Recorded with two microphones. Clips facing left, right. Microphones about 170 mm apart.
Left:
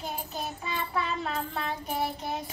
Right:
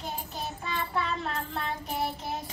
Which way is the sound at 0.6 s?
Centre (ahead or behind).